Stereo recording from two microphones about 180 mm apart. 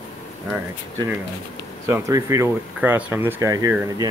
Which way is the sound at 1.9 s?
15° right (ahead or behind).